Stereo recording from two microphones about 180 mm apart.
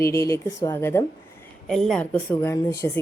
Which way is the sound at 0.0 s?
15° left (ahead or behind).